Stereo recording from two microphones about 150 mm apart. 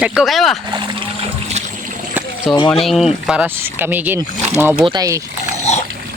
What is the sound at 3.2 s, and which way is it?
Speech, 10° right (ahead or behind).